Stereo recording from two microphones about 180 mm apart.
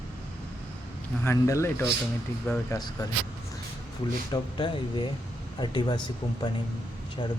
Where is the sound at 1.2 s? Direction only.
15° left (ahead or behind).